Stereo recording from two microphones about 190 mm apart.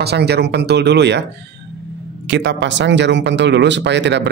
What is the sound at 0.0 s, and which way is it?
Speech, 60° right (ahead or behind).